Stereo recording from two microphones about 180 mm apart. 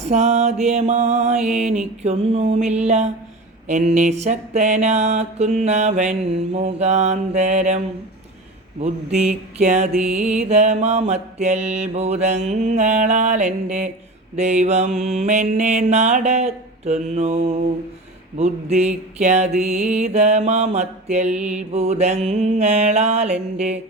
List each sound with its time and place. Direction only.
0.1 s mantra: 40° right (ahead or behind)
8.8 s mantra: 40° right (ahead or behind)
9.9 s music: 5° right (ahead or behind)
10.5 s mantra: 40° right (ahead or behind)
21.3 s music: 5° right (ahead or behind)
21.7 s mantra: 35° right (ahead or behind)